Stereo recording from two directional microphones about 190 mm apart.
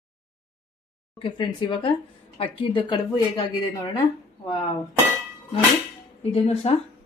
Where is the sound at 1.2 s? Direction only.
25° left (ahead or behind).